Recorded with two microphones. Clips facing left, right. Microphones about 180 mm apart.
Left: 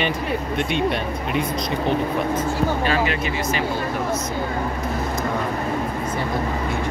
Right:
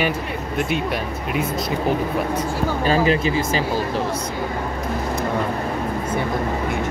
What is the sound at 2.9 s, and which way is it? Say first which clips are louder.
Speech: right 4 dB; 35° right (ahead or behind).